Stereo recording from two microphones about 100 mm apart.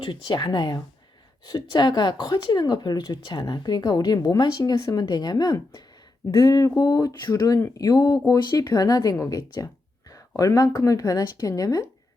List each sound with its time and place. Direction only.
0.0 s speech: 50° left (ahead or behind); by 9.6 s 35° left (ahead or behind)
10.1 s a sound: 35° left (ahead or behind)
10.8 s speech: 35° left (ahead or behind)